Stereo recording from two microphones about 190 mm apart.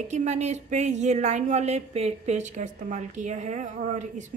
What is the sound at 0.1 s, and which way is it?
A woman's voice, 35° right (ahead or behind).